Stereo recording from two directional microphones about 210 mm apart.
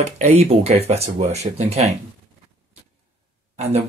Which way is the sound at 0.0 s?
30° right (ahead or behind).